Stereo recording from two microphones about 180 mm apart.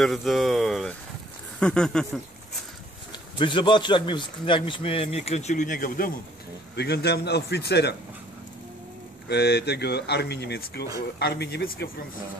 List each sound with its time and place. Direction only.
0.0 s speech: centre (ahead or behind)
3.1 s a man's voice: 25° left (ahead or behind); by 6.1 s 50° left (ahead or behind)
6.7 s speech: 65° left (ahead or behind)
9.3 s speech: 65° left (ahead or behind)